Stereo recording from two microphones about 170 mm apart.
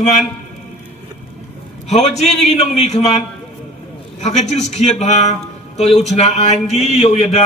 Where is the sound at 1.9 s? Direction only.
40° left (ahead or behind).